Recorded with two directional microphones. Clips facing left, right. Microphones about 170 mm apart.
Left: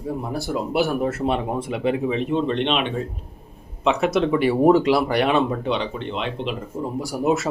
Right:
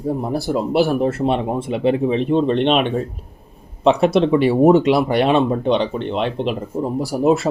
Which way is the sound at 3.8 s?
30° right (ahead or behind).